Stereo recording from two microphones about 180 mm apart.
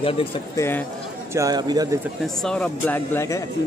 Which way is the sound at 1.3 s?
20° right (ahead or behind).